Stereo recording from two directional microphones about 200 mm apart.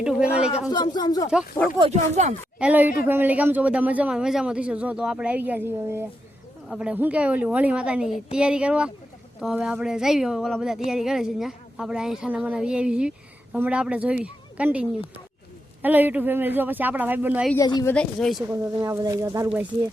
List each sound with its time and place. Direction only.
0.0 s a woman's voice: 5° right (ahead or behind)
0.7 s speech: 20° left (ahead or behind)
1.8 s speech: 35° right (ahead or behind)
2.6 s a man's voice: 5° right (ahead or behind)
17.5 s speech: 20° left (ahead or behind)
17.9 s a woman's voice: 5° left (ahead or behind)
18.4 s a man's voice: 15° right (ahead or behind)